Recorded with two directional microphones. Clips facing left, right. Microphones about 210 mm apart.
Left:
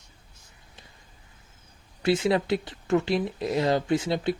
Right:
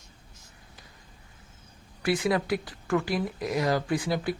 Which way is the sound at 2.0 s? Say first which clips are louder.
Left 3 dB; 25° left (ahead or behind).